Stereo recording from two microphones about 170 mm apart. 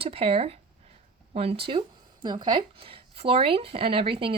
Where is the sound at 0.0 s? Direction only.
35° right (ahead or behind).